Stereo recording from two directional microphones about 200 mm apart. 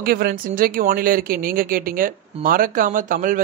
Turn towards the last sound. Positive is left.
turn(degrees=-40)  # may be behind; listen again after turning